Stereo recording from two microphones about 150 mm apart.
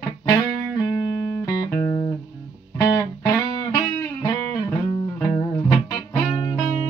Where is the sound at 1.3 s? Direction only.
20° left (ahead or behind).